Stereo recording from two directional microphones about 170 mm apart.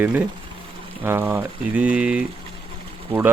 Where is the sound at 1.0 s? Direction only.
15° right (ahead or behind).